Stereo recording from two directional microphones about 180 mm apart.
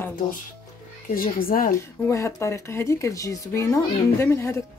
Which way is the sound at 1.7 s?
15° left (ahead or behind).